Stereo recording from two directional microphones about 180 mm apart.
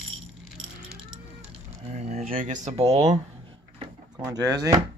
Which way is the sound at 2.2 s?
50° right (ahead or behind).